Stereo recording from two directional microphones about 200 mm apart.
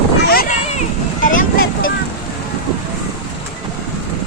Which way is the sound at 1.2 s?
45° left (ahead or behind).